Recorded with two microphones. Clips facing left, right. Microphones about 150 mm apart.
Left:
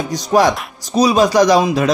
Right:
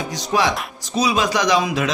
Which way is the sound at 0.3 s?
45° left (ahead or behind).